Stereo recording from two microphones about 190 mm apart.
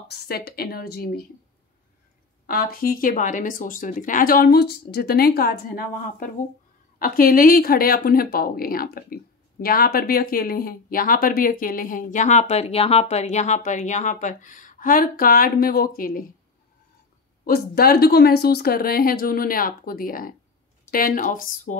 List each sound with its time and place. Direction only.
0.5 s speech: 55° left (ahead or behind)
2.4 s speech: 50° left (ahead or behind)
17.5 s speech: 55° left (ahead or behind)